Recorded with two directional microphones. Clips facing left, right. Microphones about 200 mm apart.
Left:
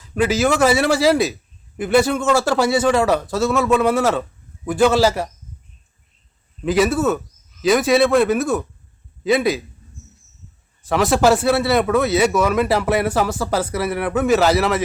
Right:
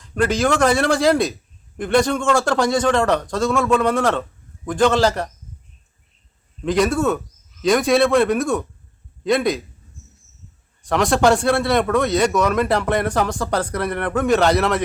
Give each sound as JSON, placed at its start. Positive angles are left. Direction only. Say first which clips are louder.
{"t": 0.0, "sound": "a man's voice", "louder": "left 1 dB", "side_deg": 5}
{"t": 6.6, "sound": "a man's voice", "louder": "left 1 dB", "side_deg": 5}
{"t": 10.8, "sound": "a man's voice", "louder": "left 1 dB", "side_deg": 5}